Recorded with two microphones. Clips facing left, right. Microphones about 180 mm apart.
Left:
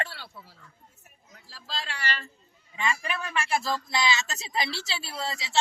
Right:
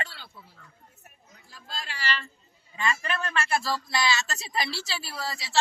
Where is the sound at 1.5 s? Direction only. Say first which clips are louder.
Left 3 dB; 80° left; by 2.3 s 50° left (ahead or behind).